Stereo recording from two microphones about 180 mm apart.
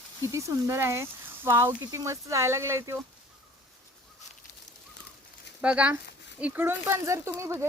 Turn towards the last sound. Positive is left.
turn(degrees=-15)  # may be behind; listen again after turning